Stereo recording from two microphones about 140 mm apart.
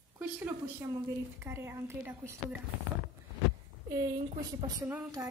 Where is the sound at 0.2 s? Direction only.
10° right (ahead or behind).